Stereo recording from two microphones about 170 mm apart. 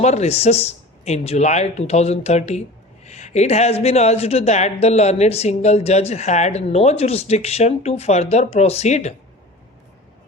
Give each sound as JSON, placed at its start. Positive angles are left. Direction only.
{"t": 0.0, "sound": "speech", "side_deg": 40}